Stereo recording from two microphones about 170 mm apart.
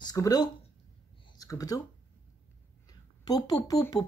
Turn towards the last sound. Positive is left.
turn(degrees=20)  # may be behind; listen again after turning